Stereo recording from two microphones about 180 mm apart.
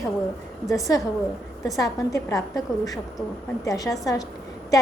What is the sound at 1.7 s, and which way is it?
Speech, 20° left (ahead or behind).